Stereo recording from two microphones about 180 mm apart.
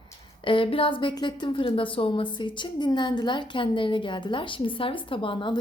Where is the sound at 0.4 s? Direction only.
30° left (ahead or behind).